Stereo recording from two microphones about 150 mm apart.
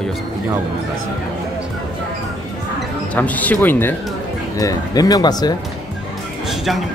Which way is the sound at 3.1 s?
10° left (ahead or behind).